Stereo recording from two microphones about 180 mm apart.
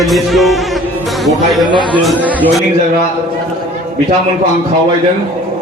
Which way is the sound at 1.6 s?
25° left (ahead or behind).